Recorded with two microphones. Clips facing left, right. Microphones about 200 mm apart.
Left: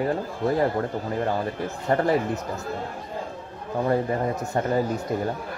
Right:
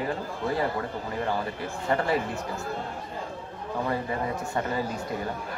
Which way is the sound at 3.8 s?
45° left (ahead or behind).